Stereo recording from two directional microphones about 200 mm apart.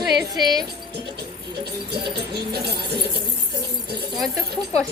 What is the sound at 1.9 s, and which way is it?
Speech, 55° right (ahead or behind).